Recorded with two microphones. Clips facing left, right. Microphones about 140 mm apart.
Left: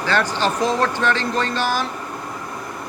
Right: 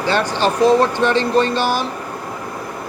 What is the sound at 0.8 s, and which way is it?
Speech, 25° right (ahead or behind).